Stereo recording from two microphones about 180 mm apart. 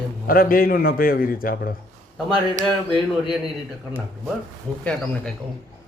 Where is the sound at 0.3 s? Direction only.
55° left (ahead or behind).